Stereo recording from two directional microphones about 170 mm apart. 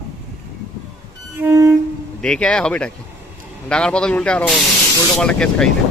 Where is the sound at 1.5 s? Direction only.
15° right (ahead or behind).